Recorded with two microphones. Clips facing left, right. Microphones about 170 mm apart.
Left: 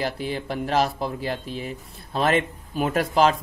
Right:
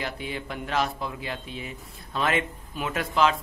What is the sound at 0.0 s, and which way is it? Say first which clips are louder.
Speech: left 5 dB; 35° left (ahead or behind).